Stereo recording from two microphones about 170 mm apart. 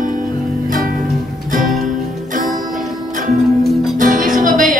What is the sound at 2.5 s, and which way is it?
Music, 50° right (ahead or behind).